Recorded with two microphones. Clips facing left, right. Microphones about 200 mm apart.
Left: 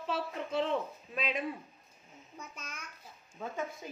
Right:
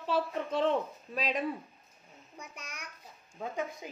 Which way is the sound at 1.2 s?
35° right (ahead or behind).